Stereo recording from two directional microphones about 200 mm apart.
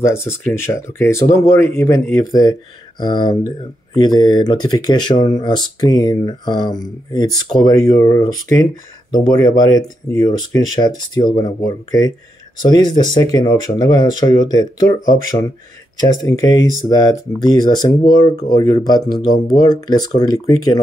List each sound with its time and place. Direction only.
0.0 s speech: 10° left (ahead or behind)
16.0 s speech: 20° left (ahead or behind)